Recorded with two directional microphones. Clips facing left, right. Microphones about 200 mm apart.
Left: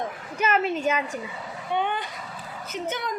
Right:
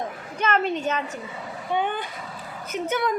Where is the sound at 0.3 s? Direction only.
10° left (ahead or behind).